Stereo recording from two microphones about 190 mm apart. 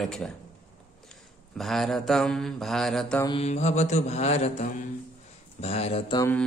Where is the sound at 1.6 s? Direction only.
Centre (ahead or behind).